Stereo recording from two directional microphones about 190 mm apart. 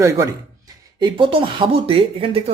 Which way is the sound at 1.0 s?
25° right (ahead or behind).